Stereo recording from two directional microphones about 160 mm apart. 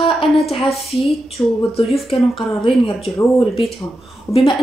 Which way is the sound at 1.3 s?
35° left (ahead or behind).